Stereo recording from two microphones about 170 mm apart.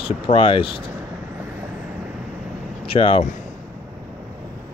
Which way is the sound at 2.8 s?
30° left (ahead or behind).